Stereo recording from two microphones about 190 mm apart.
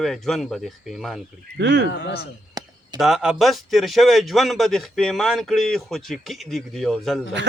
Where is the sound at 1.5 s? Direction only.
65° right (ahead or behind).